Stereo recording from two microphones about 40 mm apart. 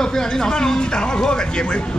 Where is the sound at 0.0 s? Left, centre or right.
Centre.